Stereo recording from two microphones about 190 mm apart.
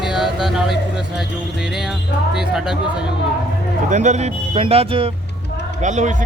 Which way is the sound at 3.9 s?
40° right (ahead or behind).